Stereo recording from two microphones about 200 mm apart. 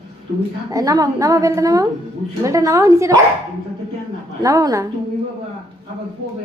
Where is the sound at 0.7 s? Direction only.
15° right (ahead or behind).